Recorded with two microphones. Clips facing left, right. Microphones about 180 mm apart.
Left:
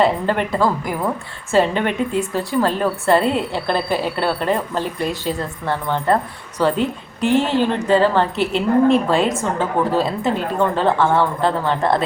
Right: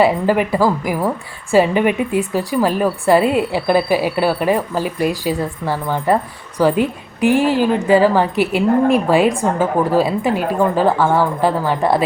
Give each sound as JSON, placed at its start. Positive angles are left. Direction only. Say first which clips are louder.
{"t": 0.0, "sound": "a woman's voice", "louder": "right 3 dB", "side_deg": -10}